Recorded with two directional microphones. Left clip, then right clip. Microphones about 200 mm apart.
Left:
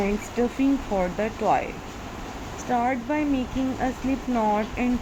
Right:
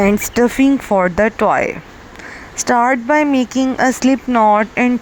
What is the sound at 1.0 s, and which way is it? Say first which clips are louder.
Speech: right 12 dB; 50° right (ahead or behind).